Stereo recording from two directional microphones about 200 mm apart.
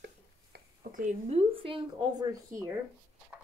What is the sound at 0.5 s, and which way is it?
Speech, 40° right (ahead or behind).